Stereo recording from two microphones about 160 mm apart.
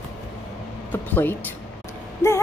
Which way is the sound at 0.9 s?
10° left (ahead or behind).